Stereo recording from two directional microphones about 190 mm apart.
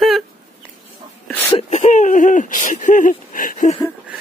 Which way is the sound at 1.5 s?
35° left (ahead or behind).